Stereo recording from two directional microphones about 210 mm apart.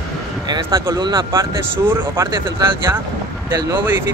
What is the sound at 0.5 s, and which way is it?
Speech, 15° right (ahead or behind).